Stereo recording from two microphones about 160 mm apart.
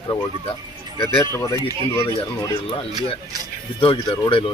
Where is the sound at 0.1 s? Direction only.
30° left (ahead or behind).